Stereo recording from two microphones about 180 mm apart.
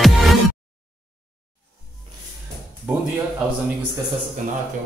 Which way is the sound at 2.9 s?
10° right (ahead or behind).